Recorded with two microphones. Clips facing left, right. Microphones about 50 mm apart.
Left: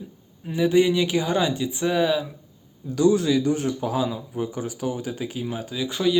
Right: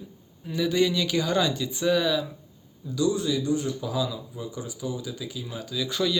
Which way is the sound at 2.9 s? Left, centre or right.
Left.